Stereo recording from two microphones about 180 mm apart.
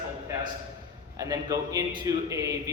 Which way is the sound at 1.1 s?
20° right (ahead or behind).